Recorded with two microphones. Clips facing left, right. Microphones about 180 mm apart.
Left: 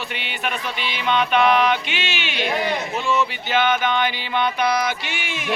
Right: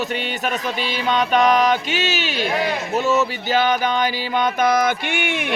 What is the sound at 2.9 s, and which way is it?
Speech, 40° right (ahead or behind).